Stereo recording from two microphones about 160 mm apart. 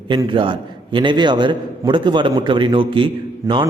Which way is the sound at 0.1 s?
30° right (ahead or behind).